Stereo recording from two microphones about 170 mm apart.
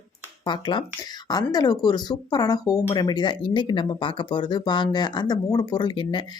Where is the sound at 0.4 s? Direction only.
25° left (ahead or behind).